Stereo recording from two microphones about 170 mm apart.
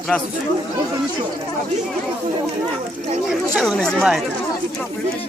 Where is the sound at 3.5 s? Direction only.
Centre (ahead or behind).